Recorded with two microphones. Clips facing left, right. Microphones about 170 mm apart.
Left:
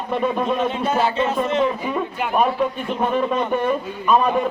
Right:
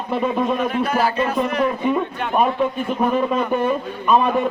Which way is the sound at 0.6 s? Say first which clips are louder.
Even; 25° left (ahead or behind).